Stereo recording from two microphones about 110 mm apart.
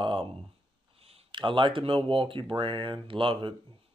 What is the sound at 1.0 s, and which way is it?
Speech, 55° right (ahead or behind).